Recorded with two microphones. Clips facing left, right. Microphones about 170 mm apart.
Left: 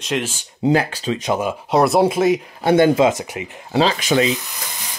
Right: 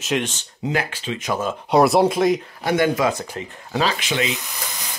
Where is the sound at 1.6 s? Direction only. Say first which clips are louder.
Even; centre (ahead or behind).